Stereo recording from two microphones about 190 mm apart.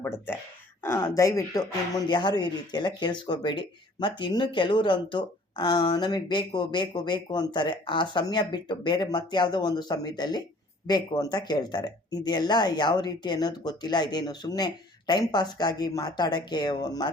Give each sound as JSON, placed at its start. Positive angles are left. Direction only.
{"t": 0.8, "sound": "speech", "side_deg": 15}